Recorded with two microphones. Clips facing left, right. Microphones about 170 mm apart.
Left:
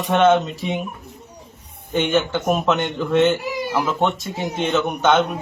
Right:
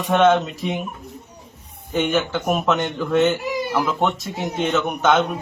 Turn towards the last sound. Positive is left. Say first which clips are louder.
# left 1 dB
turn(degrees=0)  # may be behind; listen again after turning